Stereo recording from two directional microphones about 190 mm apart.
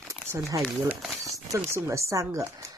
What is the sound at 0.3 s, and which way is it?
Speech, 15° right (ahead or behind).